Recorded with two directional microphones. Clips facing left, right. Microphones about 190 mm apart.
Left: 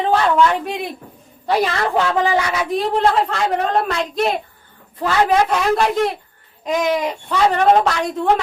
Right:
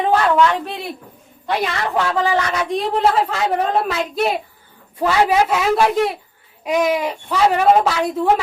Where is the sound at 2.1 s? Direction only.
15° left (ahead or behind).